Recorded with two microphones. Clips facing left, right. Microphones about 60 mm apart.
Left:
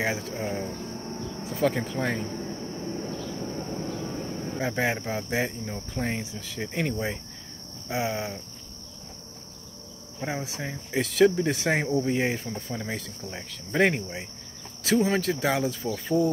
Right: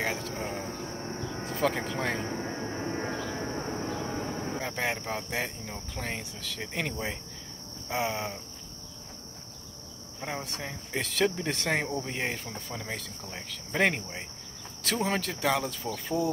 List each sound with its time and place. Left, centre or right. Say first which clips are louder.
0.0 s speech: left 3 dB; centre
2.2 s a sound: right 1 dB; right
4.6 s cricket: left 7 dB; centre
6.6 s speech: left 5 dB; centre
10.2 s speech: left 4 dB; centre